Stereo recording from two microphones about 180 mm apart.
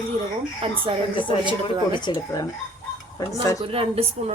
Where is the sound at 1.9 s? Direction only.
25° left (ahead or behind).